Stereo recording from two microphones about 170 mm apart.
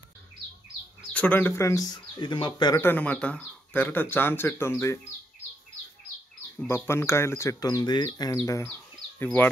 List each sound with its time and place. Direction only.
1.1 s speech: 10° left (ahead or behind); by 2.8 s 25° left (ahead or behind)
2.8 s speech: 10° left (ahead or behind)
6.7 s speech: 15° left (ahead or behind)